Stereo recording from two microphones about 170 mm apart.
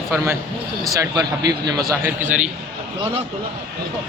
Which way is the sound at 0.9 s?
20° right (ahead or behind).